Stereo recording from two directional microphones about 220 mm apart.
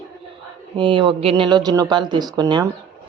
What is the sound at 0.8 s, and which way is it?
Speech, 20° right (ahead or behind).